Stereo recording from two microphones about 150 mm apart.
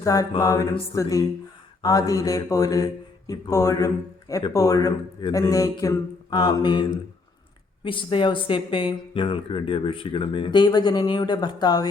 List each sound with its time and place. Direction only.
0.0 s speech: 20° left (ahead or behind)
1.8 s speech: 25° left (ahead or behind)
7.9 s speech: 35° left (ahead or behind)